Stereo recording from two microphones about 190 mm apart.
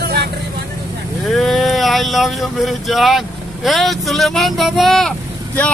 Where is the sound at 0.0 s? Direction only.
55° right (ahead or behind).